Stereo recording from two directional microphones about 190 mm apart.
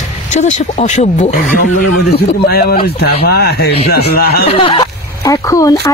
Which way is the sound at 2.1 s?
50° left (ahead or behind).